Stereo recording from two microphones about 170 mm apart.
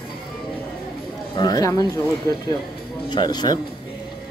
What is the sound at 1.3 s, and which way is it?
Speech, 20° left (ahead or behind).